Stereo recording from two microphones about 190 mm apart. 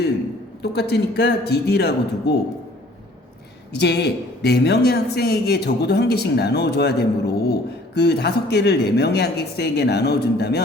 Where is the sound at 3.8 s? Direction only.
60° left (ahead or behind).